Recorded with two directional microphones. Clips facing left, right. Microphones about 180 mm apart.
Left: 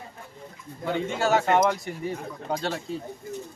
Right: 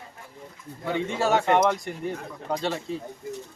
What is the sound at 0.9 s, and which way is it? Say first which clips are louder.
A man's voice: even; centre (ahead or behind).